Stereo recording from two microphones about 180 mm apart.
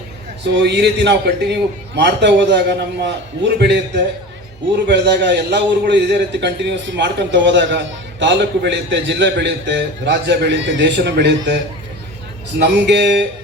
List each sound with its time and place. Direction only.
0.5 s a man's voice: 70° right (ahead or behind)